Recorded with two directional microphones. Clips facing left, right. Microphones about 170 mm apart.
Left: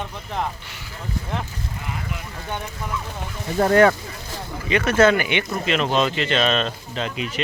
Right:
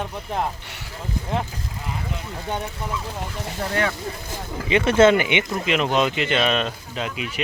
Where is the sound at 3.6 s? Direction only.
55° left (ahead or behind).